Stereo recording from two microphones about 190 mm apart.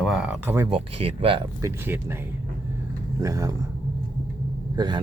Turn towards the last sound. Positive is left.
turn(degrees=-20)  # may be behind; listen again after turning